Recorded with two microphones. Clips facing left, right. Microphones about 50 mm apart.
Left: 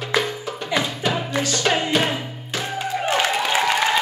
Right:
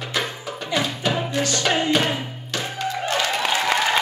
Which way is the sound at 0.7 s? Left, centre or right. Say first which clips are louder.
Even; centre.